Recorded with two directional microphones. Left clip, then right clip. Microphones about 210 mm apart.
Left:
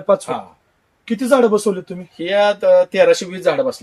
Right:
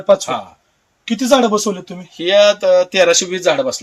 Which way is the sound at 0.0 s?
15° left (ahead or behind).